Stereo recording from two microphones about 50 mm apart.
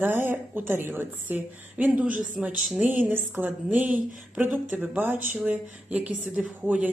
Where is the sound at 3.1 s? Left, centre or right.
Right.